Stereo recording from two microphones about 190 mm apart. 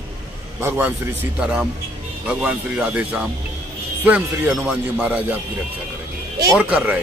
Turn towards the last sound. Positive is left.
turn(degrees=-5)  # may be behind; listen again after turning